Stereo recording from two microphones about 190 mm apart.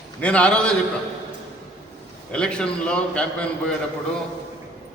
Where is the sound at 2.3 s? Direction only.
5° left (ahead or behind).